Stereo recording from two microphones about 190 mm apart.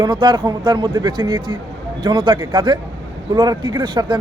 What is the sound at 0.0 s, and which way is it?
A man's voice, 25° right (ahead or behind).